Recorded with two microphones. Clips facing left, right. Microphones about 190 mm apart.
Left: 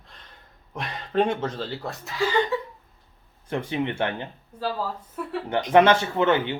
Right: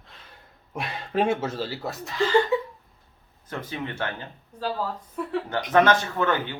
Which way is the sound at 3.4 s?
30° left (ahead or behind).